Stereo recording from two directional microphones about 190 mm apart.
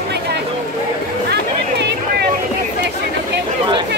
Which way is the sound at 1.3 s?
60° right (ahead or behind).